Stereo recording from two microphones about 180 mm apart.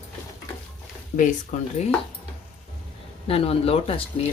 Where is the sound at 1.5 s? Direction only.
45° left (ahead or behind).